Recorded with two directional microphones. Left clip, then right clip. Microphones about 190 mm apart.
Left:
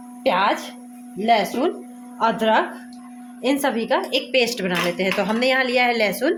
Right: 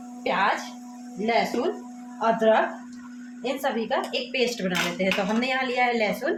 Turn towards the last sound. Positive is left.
turn(degrees=55)  # may be behind; listen again after turning